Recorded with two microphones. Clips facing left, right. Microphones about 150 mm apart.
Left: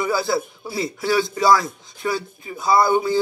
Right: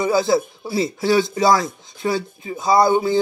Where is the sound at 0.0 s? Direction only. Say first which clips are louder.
Right 4 dB; 20° right (ahead or behind).